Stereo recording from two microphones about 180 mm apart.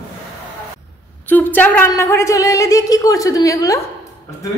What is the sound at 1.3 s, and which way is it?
A woman's voice, 10° left (ahead or behind).